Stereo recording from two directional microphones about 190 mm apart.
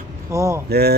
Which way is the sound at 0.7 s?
55° right (ahead or behind).